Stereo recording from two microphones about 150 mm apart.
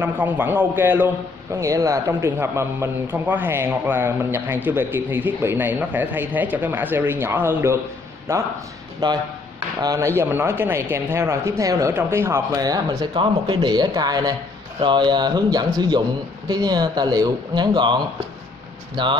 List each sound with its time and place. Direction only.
0.0 s a man's voice: 15° right (ahead or behind); by 19.1 s 30° right (ahead or behind)